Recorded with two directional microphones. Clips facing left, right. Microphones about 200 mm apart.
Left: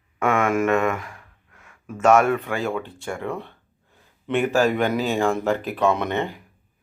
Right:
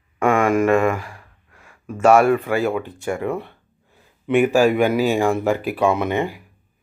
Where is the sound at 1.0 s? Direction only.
Centre (ahead or behind).